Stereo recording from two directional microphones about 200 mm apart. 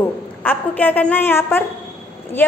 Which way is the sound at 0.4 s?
10° left (ahead or behind).